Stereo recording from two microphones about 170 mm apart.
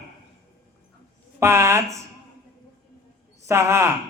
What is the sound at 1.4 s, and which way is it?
Speech, 15° right (ahead or behind).